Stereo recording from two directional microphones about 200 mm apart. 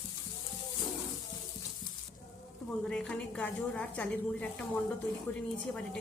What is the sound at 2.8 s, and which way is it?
A woman's voice, 5° left (ahead or behind).